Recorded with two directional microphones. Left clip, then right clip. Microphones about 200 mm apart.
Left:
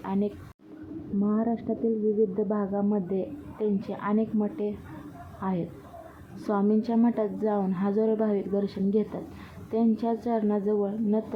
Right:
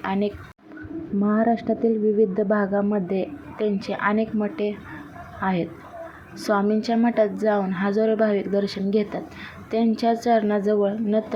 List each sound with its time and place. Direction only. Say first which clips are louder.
0.0 s a woman's voice: right 6 dB; 15° right (ahead or behind)